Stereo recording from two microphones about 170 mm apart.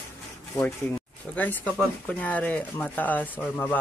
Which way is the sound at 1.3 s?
10° left (ahead or behind).